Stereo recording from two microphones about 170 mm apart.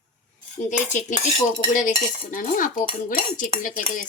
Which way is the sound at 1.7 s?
50° left (ahead or behind).